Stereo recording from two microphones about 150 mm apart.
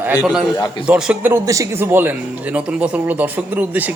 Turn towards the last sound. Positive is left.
turn(degrees=-10)  # may be behind; listen again after turning